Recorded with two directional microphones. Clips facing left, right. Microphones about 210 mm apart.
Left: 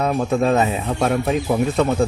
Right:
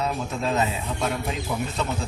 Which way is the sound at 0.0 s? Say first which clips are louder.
Left 9 dB; 55° left (ahead or behind).